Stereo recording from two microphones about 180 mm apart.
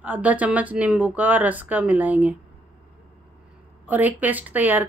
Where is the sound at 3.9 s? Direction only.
10° right (ahead or behind).